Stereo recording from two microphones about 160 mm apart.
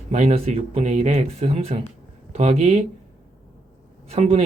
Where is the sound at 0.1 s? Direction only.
45° right (ahead or behind).